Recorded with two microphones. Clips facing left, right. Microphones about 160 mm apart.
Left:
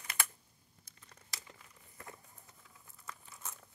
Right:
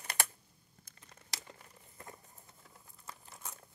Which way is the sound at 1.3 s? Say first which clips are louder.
Right 4 dB; 75° right (ahead or behind).